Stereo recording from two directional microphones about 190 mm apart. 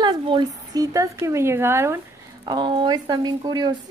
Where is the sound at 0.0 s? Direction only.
25° right (ahead or behind).